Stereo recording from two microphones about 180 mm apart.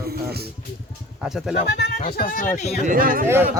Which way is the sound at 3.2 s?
15° right (ahead or behind).